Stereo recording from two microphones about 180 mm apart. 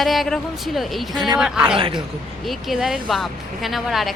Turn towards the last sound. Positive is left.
turn(degrees=0)  # may be behind; listen again after turning